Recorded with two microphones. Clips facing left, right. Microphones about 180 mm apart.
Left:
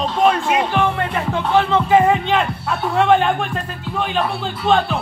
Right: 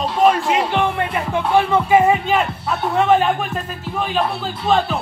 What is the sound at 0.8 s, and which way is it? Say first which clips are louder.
Music: left 2 dB; 20° right (ahead or behind).